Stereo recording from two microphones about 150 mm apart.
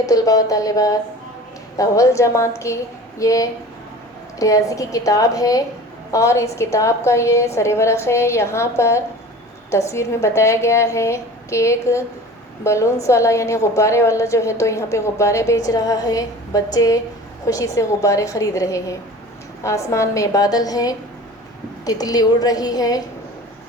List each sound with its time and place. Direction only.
0.0 s a woman's voice: 20° left (ahead or behind)